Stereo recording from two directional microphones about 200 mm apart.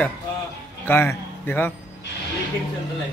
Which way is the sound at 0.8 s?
10° left (ahead or behind).